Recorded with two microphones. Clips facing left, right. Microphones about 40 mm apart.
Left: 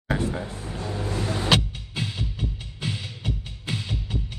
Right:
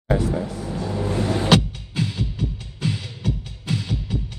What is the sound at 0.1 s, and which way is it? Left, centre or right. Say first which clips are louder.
Speech: right 5 dB; left.